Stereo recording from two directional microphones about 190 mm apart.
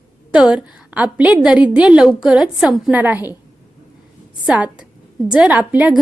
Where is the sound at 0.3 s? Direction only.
5° right (ahead or behind).